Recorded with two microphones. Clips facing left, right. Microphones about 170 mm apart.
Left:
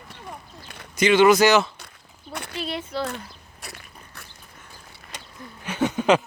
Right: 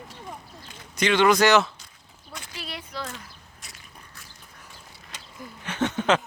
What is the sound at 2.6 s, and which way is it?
Speech, 25° left (ahead or behind).